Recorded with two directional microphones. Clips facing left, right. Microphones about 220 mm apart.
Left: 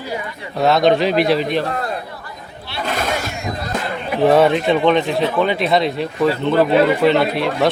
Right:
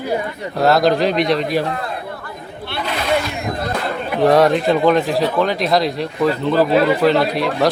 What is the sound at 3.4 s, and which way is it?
Music, 55° right (ahead or behind).